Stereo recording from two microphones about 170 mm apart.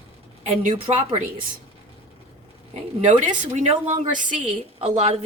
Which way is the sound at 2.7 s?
45° right (ahead or behind).